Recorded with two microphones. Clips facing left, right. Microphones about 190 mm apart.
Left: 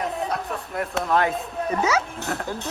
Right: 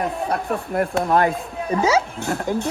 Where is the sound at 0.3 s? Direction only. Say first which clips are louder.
Right 5 dB; 55° right (ahead or behind).